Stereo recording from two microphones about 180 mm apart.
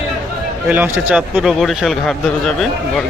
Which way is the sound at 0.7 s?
10° right (ahead or behind).